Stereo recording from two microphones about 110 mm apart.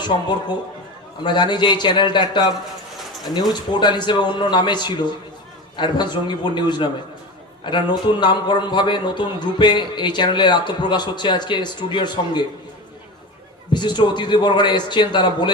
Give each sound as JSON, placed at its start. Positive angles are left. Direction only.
{"t": 0.0, "sound": "a man's voice", "side_deg": 45}
{"t": 13.7, "sound": "a man's voice", "side_deg": 45}